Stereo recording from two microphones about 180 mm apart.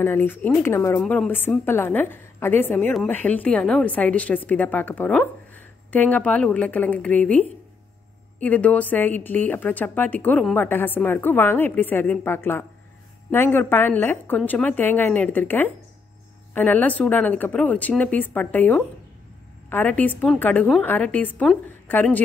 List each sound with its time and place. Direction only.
0.0 s speech: 10° left (ahead or behind)